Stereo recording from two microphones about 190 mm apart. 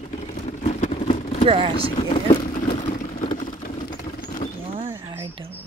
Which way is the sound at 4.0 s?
40° left (ahead or behind).